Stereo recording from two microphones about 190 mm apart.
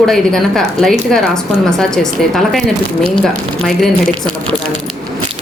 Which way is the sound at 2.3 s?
Centre (ahead or behind).